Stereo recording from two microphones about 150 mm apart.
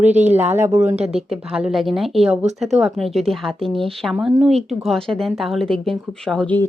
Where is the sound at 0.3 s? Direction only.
15° right (ahead or behind).